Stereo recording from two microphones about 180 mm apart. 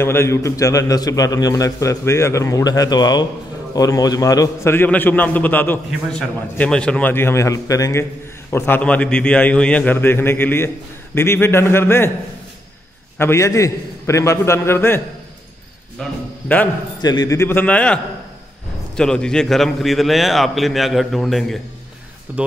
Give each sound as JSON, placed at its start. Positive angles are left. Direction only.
{"t": 0.0, "sound": "a man's voice", "side_deg": 15}
{"t": 13.2, "sound": "a man's voice", "side_deg": 15}
{"t": 16.0, "sound": "a man's voice", "side_deg": 10}
{"t": 17.0, "sound": "a man's voice", "side_deg": 20}